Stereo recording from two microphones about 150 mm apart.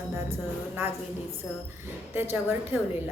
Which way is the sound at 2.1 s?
15° right (ahead or behind).